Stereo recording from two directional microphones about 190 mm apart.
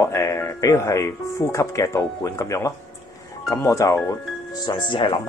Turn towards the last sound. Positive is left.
turn(degrees=25)  # may be behind; listen again after turning